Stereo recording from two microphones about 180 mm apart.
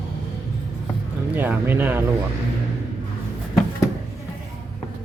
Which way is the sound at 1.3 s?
10° right (ahead or behind).